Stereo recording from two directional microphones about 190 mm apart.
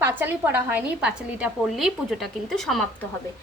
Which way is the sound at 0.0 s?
10° right (ahead or behind).